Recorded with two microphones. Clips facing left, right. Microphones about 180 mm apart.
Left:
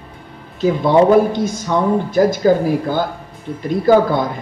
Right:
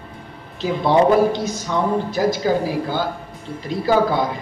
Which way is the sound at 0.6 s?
50° left (ahead or behind).